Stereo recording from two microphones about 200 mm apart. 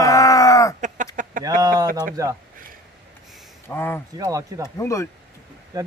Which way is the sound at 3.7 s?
10° left (ahead or behind).